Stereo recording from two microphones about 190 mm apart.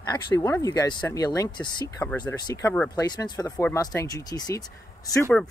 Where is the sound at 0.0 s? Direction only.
20° left (ahead or behind).